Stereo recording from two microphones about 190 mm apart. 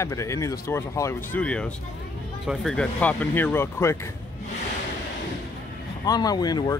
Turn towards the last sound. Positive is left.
turn(degrees=20)  # may be behind; listen again after turning